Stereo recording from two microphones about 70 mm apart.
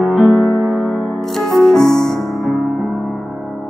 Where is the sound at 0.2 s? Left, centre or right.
Centre.